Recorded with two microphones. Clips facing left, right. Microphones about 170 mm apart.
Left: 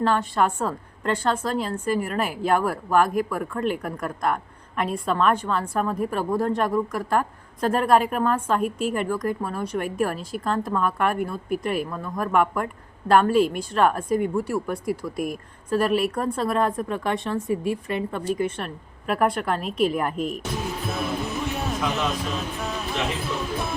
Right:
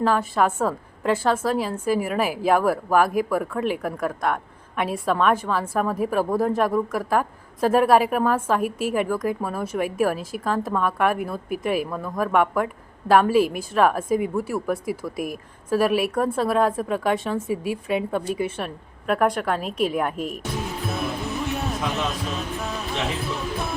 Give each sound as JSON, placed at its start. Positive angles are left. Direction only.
{"t": 0.0, "sound": "a woman's voice", "side_deg": -5}
{"t": 20.9, "sound": "music", "side_deg": 0}